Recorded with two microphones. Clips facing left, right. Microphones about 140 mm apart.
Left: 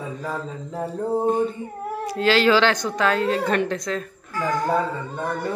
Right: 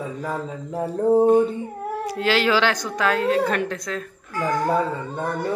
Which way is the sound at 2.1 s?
15° right (ahead or behind).